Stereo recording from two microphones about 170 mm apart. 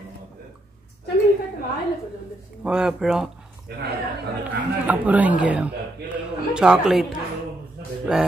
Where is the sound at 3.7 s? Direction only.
70° right (ahead or behind).